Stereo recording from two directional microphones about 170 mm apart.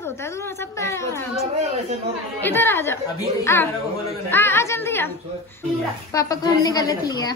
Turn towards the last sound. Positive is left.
turn(degrees=20)  # may be behind; listen again after turning